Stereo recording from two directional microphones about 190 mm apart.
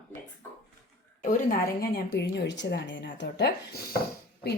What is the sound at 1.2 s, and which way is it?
A woman's voice, 45° left (ahead or behind).